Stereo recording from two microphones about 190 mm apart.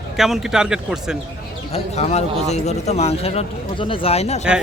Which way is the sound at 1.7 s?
35° left (ahead or behind).